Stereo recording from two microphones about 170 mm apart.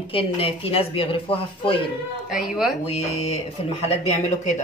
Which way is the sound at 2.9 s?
40° left (ahead or behind).